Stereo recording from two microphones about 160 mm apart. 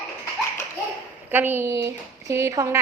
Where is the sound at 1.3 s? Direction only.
10° right (ahead or behind).